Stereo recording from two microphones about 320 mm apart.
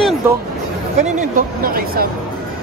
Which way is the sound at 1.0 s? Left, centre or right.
Right.